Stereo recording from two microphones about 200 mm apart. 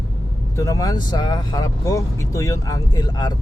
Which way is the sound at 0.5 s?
15° left (ahead or behind).